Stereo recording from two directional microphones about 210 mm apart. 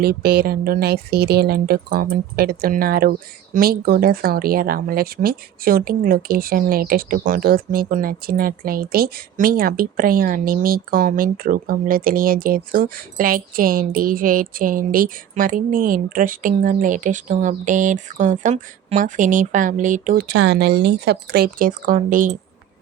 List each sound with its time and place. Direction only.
0.0 s speech: 50° right (ahead or behind)